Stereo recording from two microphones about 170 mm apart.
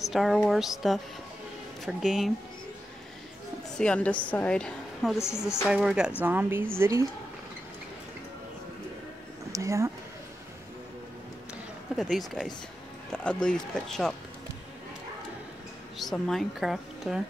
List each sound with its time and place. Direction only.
0.1 s a woman's voice: centre (ahead or behind)
3.7 s a woman's voice: 5° left (ahead or behind); by 7.1 s 15° right (ahead or behind)
9.5 s speech: 20° right (ahead or behind)
12.0 s a woman's voice: centre (ahead or behind)
16.0 s a woman's voice: centre (ahead or behind)